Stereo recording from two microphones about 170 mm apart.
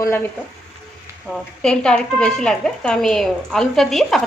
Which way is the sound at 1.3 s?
5° left (ahead or behind).